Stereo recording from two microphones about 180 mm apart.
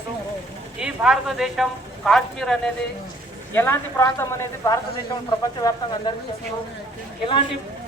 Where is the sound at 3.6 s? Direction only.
15° left (ahead or behind).